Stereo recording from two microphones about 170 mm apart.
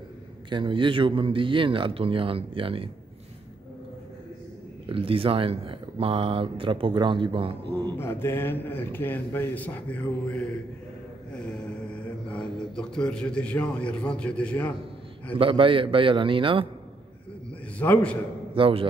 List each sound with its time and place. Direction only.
0.5 s speech: 30° right (ahead or behind)
4.8 s speech: 35° right (ahead or behind)
8.0 s speech: 15° left (ahead or behind)
11.3 s mantra: 5° left (ahead or behind)
12.3 s a man's voice: 5° left (ahead or behind)
15.3 s speech: 30° right (ahead or behind)
17.7 s speech: 10° left (ahead or behind)
18.5 s a man's voice: 35° right (ahead or behind)